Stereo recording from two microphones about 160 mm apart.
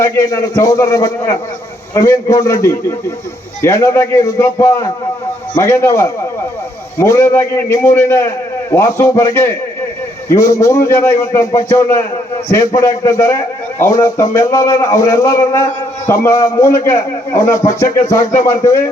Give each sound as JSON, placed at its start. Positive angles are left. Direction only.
{"t": 0.0, "sound": "a man's voice", "side_deg": 20}